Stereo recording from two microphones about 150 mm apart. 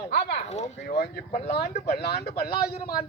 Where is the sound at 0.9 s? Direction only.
90° left.